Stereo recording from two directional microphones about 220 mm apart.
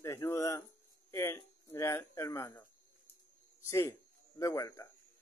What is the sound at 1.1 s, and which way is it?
Speech, 10° left (ahead or behind).